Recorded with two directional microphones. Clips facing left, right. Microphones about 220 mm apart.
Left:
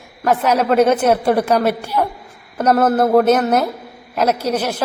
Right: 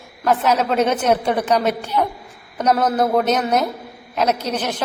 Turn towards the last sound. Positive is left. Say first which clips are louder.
# left 4 dB
turn(degrees=10)  # may be behind; listen again after turning